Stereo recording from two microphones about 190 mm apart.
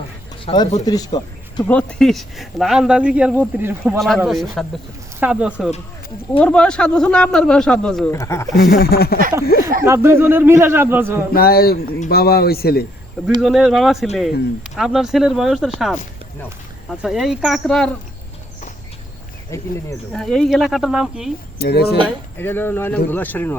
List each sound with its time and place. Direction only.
0.4 s speech: 20° left (ahead or behind)
1.6 s speech: 5° left (ahead or behind); by 4.0 s 10° right (ahead or behind)
4.0 s speech: centre (ahead or behind)
6.4 s speech: 5° left (ahead or behind)
8.1 s speech: 15° left (ahead or behind)
8.5 s speech: 55° left (ahead or behind)
9.8 s speech: 15° right (ahead or behind)
11.3 s speech: 55° left (ahead or behind)
13.4 s speech: centre (ahead or behind)
17.0 s speech: 5° right (ahead or behind)
19.5 s speech: 15° left (ahead or behind)
20.1 s speech: centre (ahead or behind)
21.6 s speech: 55° left (ahead or behind)
22.4 s speech: 10° left (ahead or behind)